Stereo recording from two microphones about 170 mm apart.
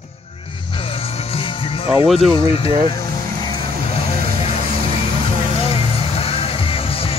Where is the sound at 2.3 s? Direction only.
30° left (ahead or behind).